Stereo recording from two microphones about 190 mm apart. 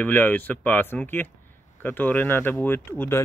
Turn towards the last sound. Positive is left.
turn(degrees=10)  # may be behind; listen again after turning